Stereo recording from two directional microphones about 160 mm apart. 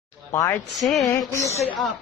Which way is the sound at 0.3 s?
20° left (ahead or behind).